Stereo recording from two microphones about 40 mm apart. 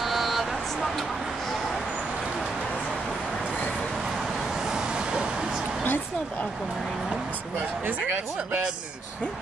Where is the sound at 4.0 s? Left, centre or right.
Centre.